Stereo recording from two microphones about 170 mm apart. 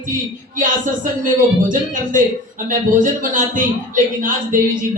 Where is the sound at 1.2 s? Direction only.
50° right (ahead or behind).